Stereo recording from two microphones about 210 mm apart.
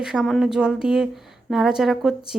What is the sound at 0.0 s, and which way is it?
Speech, centre (ahead or behind).